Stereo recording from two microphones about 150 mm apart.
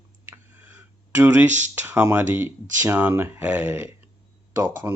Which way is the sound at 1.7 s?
15° right (ahead or behind).